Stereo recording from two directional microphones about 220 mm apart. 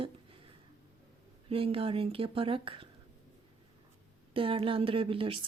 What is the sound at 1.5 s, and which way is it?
Speech, 25° right (ahead or behind).